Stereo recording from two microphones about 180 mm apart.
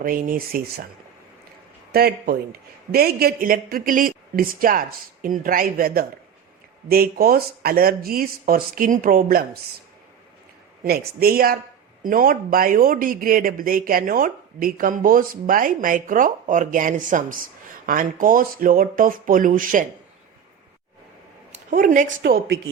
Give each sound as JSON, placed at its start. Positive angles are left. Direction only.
{"t": 0.0, "sound": "speech", "side_deg": -50}
{"t": 1.9, "sound": "speech", "side_deg": -60}
{"t": 10.8, "sound": "speech", "side_deg": -55}
{"t": 21.7, "sound": "speech", "side_deg": -45}
{"t": 22.2, "sound": "speech", "side_deg": -60}